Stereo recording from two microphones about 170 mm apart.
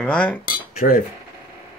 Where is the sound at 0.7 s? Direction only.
55° left (ahead or behind).